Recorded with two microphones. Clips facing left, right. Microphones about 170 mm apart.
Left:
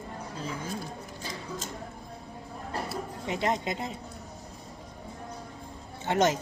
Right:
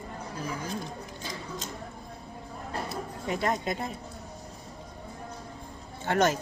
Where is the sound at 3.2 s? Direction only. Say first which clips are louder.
Even; 20° left (ahead or behind).